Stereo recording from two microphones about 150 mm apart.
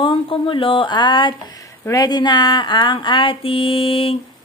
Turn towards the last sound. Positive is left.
turn(degrees=40)  # may be behind; listen again after turning